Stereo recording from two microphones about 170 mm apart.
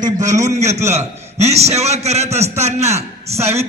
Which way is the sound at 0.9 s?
40° right (ahead or behind).